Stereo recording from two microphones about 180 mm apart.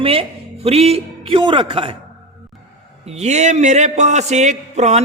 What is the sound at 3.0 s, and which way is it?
Speech, 40° right (ahead or behind).